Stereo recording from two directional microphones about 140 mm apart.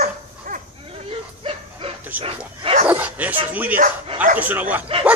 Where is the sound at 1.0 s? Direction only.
40° right (ahead or behind).